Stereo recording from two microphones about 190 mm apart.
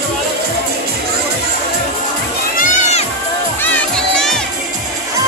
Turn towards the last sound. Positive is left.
turn(degrees=5)  # may be behind; listen again after turning